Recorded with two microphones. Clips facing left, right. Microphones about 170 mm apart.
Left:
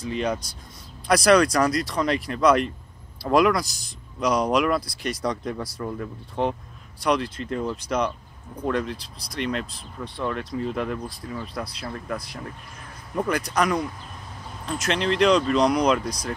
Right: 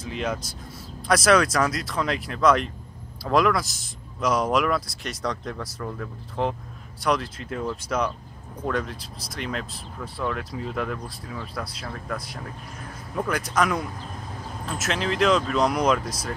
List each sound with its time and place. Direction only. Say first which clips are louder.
0.0 s speech: left 3 dB; centre (ahead or behind)
6.4 s speech: left 1 dB; centre (ahead or behind)